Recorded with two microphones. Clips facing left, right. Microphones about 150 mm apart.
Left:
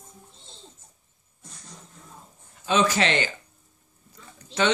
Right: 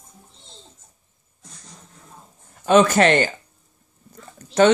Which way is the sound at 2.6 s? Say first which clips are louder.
Right 8 dB; 50° right (ahead or behind).